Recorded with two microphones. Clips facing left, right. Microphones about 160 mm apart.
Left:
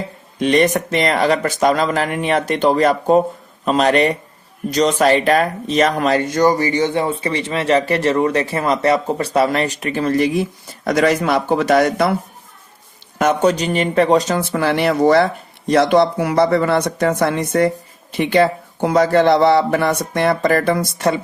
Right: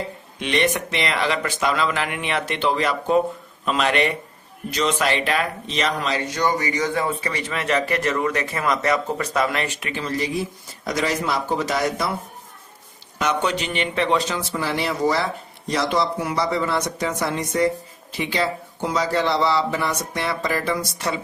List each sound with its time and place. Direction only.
0.3 s speech: 40° left (ahead or behind)
10.0 s a man's voice: 60° left (ahead or behind)
13.1 s speech: 45° left (ahead or behind)
14.5 s a man's voice: 65° left (ahead or behind)